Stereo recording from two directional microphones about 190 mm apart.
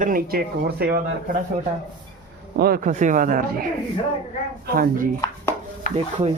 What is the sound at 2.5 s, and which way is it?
Speech, 50° right (ahead or behind).